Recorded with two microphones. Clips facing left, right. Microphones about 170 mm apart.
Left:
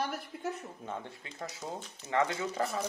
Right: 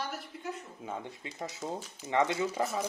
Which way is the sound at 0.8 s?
15° right (ahead or behind).